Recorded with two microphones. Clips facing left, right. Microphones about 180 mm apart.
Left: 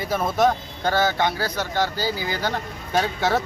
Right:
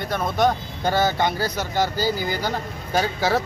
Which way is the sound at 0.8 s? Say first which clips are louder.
Right 1 dB; 15° right (ahead or behind).